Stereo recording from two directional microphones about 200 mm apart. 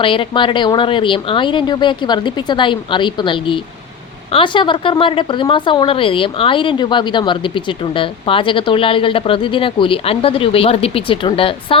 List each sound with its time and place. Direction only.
0.0 s a woman's voice: 25° left (ahead or behind)